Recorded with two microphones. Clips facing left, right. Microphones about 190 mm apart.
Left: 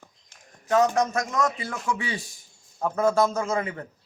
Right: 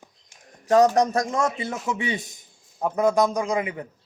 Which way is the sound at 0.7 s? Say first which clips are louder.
Right 4 dB; 35° right (ahead or behind).